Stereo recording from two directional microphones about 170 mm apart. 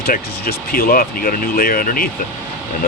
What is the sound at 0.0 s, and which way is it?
Speech, 60° left (ahead or behind).